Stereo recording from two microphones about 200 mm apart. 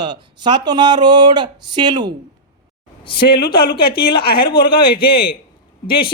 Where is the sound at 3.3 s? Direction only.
50° left (ahead or behind).